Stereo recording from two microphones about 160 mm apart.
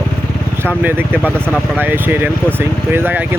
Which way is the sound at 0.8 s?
10° right (ahead or behind).